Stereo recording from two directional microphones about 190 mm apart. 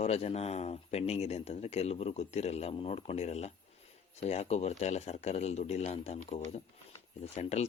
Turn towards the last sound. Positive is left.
turn(degrees=35)  # may be behind; listen again after turning